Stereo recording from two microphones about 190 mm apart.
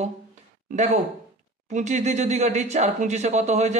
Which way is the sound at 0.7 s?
40° right (ahead or behind).